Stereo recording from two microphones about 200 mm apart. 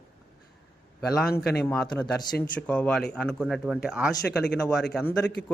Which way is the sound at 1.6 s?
5° left (ahead or behind).